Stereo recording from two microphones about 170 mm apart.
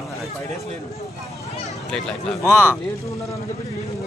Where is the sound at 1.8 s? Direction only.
5° left (ahead or behind).